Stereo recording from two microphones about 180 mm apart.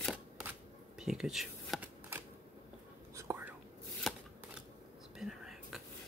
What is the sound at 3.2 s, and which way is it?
Whispering, 15° right (ahead or behind).